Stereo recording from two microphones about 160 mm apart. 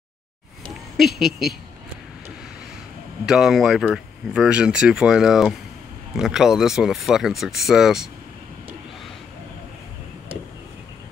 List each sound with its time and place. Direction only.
0.9 s speech: centre (ahead or behind)
3.3 s speech: 5° right (ahead or behind)